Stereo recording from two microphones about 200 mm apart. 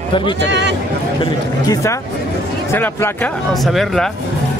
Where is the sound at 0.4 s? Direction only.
60° right (ahead or behind).